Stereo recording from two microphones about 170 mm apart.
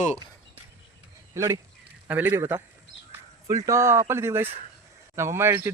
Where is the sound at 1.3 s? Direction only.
15° right (ahead or behind).